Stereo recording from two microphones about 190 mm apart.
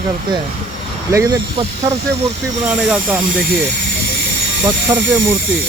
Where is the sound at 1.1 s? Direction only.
15° right (ahead or behind).